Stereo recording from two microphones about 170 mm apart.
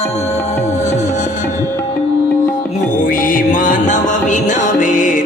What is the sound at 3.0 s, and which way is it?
Music, 50° left (ahead or behind).